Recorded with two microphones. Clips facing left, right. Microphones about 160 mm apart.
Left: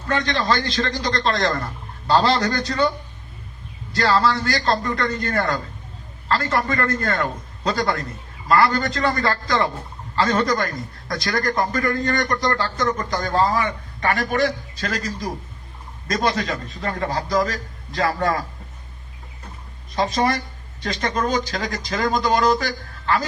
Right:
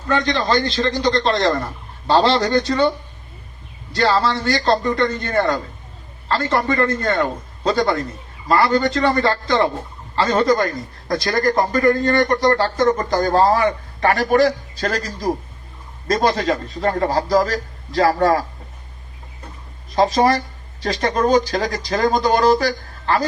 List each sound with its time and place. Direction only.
0.1 s a man's voice: 25° right (ahead or behind)
3.9 s a man's voice: 25° right (ahead or behind)
20.0 s a man's voice: 40° right (ahead or behind)